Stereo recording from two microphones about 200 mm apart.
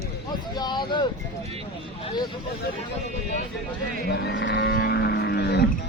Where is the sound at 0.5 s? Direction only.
20° left (ahead or behind).